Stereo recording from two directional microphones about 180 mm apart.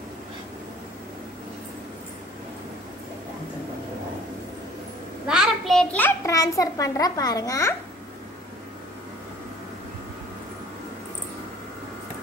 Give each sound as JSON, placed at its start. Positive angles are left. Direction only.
{"t": 5.2, "sound": "a child's voice", "side_deg": -5}